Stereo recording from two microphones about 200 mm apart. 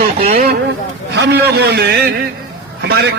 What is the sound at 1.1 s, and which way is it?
A man's voice, 60° right (ahead or behind).